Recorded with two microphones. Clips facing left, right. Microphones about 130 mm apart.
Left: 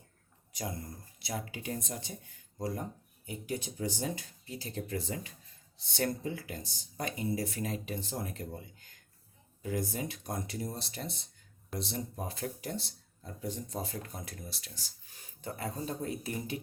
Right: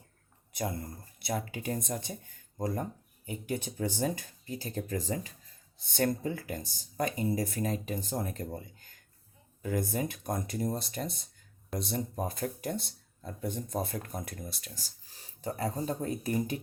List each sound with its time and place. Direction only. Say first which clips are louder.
0.5 s speech: right 4 dB; 55° right (ahead or behind)
9.6 s speech: right 3 dB; 50° right (ahead or behind)